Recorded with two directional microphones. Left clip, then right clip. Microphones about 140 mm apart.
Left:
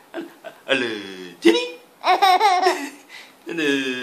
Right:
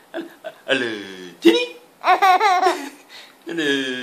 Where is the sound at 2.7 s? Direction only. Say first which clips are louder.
Even; 30° right (ahead or behind).